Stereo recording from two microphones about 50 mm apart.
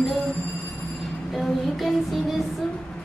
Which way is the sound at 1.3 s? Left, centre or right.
Centre.